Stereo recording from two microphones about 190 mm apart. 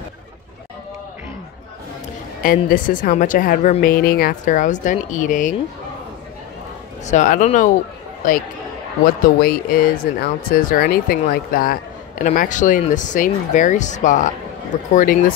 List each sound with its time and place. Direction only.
2.4 s speech: 45° left (ahead or behind)
7.1 s speech: 40° left (ahead or behind)
9.0 s speech: 50° left (ahead or behind)